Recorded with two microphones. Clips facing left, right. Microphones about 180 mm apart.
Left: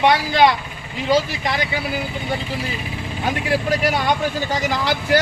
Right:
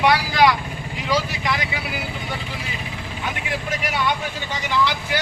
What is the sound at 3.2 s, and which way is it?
Speech, 40° left (ahead or behind).